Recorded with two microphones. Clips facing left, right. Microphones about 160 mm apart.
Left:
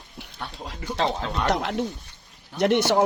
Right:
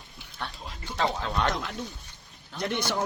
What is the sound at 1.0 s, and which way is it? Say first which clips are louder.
Speech: left 2 dB; 25° left (ahead or behind).